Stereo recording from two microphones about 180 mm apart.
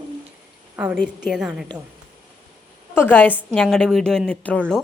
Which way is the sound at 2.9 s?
10° left (ahead or behind).